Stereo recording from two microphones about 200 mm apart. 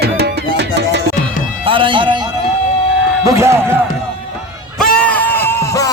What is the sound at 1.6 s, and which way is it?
Music, 25° right (ahead or behind).